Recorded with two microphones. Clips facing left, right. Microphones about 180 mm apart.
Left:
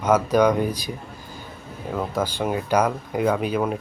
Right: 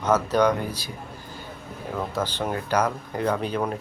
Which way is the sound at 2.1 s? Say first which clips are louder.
Left 4 dB; 10° left (ahead or behind).